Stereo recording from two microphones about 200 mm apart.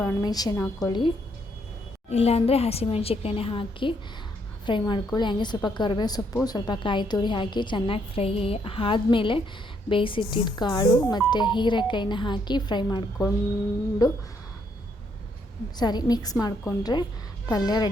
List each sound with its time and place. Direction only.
0.0 s a woman's voice: 15° left (ahead or behind)
15.8 s a woman's voice: 20° left (ahead or behind)